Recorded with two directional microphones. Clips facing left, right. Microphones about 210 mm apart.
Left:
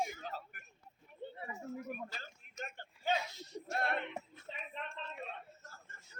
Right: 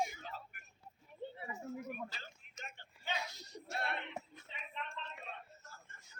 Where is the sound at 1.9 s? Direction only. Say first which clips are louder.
Left 1 dB; 45° left (ahead or behind).